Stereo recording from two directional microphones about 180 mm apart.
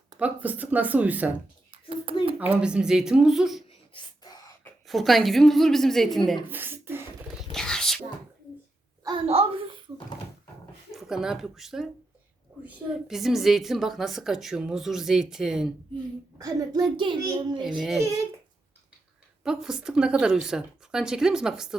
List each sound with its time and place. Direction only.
0.2 s speech: 10° right (ahead or behind)
1.7 s a sound: 30° right (ahead or behind)
2.5 s a woman's voice: 5° right (ahead or behind)
3.9 s wail: 20° left (ahead or behind)
4.9 s a woman's voice: centre (ahead or behind)
6.5 s beatboxing: 10° right (ahead or behind)
7.5 s whispering: 5° left (ahead or behind)
9.0 s a child's voice: 30° right (ahead or behind)
10.9 s a woman's voice: 5° right (ahead or behind)
16.4 s a child's voice: 20° right (ahead or behind)
17.6 s a woman's voice: centre (ahead or behind)
19.4 s a woman's voice: 5° right (ahead or behind)